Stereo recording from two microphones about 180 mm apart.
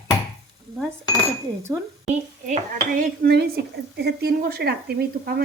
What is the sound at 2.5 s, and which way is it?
Speech, 50° right (ahead or behind).